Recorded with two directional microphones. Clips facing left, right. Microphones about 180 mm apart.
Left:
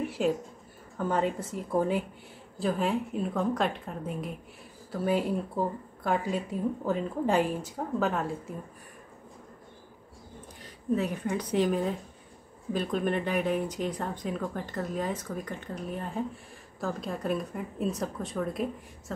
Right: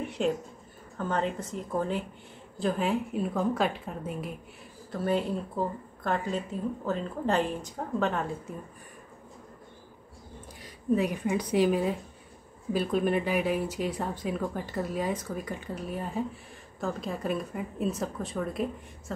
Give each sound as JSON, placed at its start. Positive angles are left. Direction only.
{"t": 0.0, "sound": "a woman's voice", "side_deg": 5}
{"t": 2.6, "sound": "a woman's voice", "side_deg": 0}
{"t": 4.9, "sound": "a woman's voice", "side_deg": 10}
{"t": 10.6, "sound": "a woman's voice", "side_deg": -10}